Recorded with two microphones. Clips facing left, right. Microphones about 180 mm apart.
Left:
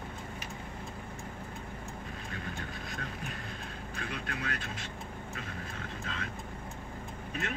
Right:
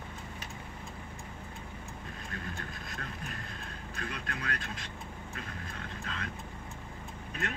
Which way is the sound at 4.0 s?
40° right (ahead or behind).